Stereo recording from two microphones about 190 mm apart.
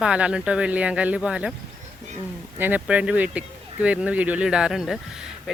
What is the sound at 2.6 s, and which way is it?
Speech, 10° right (ahead or behind).